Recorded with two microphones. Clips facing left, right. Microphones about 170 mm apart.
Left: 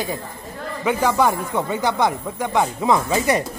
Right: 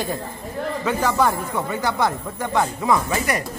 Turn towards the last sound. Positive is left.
turn(degrees=20)  # may be behind; listen again after turning